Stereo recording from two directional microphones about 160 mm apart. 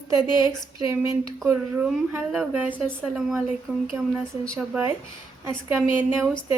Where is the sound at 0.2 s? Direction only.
25° left (ahead or behind).